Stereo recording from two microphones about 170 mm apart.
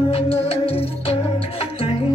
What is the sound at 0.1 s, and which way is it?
Music, 35° left (ahead or behind).